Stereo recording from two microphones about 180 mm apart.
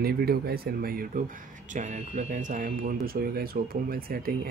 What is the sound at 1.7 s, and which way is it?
Speech, 40° right (ahead or behind).